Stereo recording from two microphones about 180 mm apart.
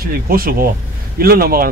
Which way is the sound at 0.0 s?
55° right (ahead or behind).